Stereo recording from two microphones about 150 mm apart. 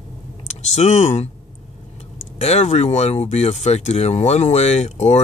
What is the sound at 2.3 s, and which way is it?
Speech, 45° left (ahead or behind).